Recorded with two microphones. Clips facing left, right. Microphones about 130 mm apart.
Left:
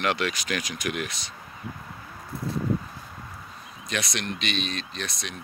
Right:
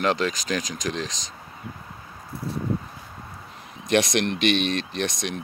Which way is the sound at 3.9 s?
70° right (ahead or behind).